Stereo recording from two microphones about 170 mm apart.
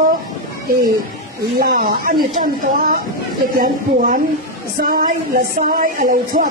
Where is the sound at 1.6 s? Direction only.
60° right (ahead or behind).